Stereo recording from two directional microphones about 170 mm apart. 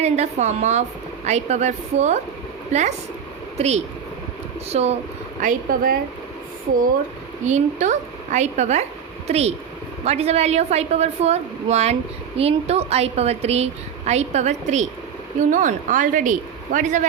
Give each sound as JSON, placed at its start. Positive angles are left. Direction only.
{"t": 0.0, "sound": "a woman's voice", "side_deg": -40}
{"t": 4.7, "sound": "a woman's voice", "side_deg": -40}
{"t": 5.4, "sound": "a woman's voice", "side_deg": -55}
{"t": 7.4, "sound": "a woman's voice", "side_deg": -45}